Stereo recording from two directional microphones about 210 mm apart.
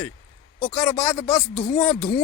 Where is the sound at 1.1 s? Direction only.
20° left (ahead or behind).